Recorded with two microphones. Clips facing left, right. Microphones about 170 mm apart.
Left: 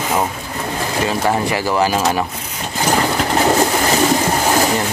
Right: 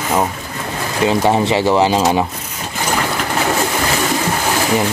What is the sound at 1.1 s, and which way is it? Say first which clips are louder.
Speech: right 5 dB; 25° right (ahead or behind).